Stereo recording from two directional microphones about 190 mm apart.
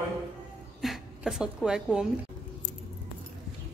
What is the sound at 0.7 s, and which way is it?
Speech, centre (ahead or behind).